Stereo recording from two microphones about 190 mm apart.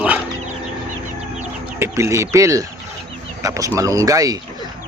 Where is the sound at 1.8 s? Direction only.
15° right (ahead or behind).